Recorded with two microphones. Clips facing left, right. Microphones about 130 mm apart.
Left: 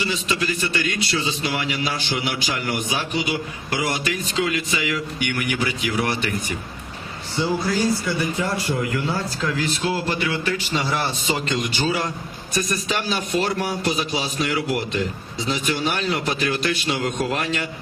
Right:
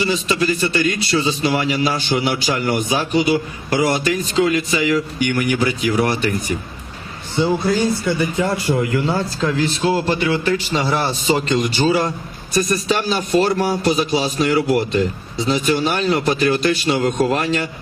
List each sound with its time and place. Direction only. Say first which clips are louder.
0.0 s a man's voice: right 6 dB; 35° right (ahead or behind)
7.4 s speech: right 4 dB; 25° right (ahead or behind)
8.7 s a man's voice: right 5 dB; 40° right (ahead or behind)